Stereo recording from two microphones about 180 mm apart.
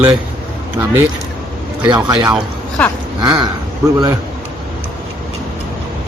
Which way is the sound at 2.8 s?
10° left (ahead or behind).